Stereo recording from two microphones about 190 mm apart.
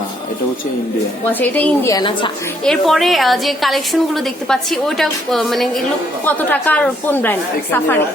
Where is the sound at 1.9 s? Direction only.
25° left (ahead or behind).